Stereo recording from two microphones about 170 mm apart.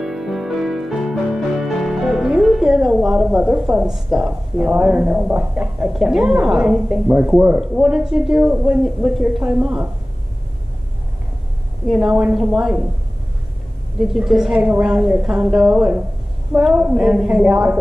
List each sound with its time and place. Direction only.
0.0 s music: centre (ahead or behind)
11.9 s a woman's voice: centre (ahead or behind)
13.9 s a woman's voice: centre (ahead or behind)